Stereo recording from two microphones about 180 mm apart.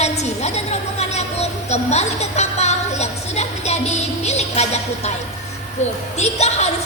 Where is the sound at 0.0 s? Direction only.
35° left (ahead or behind).